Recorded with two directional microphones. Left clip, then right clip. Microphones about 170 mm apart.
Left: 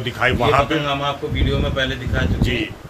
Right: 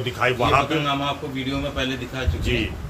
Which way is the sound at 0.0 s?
5° left (ahead or behind).